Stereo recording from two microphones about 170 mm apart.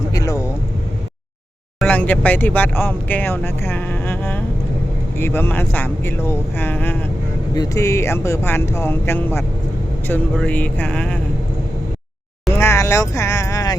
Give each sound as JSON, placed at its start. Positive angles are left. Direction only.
{"t": 0.1, "sound": "vehicle", "side_deg": 20}
{"t": 1.8, "sound": "speech", "side_deg": 10}
{"t": 7.5, "sound": "speech", "side_deg": 20}
{"t": 12.5, "sound": "a sound", "side_deg": 15}